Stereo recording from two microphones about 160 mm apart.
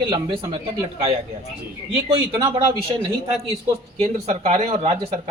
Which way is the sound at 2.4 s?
25° right (ahead or behind).